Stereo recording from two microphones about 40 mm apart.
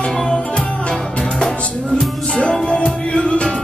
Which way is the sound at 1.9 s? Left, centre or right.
Left.